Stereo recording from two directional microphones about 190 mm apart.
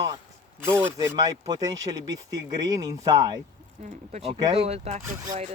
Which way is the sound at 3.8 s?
35° right (ahead or behind).